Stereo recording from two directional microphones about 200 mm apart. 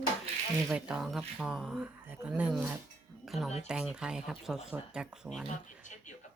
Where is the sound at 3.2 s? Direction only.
Centre (ahead or behind).